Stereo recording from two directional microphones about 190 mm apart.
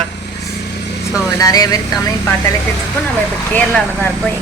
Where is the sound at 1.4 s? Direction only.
20° left (ahead or behind).